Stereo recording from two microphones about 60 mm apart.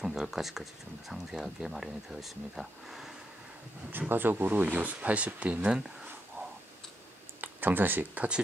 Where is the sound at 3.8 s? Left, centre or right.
Right; by 5.8 s centre.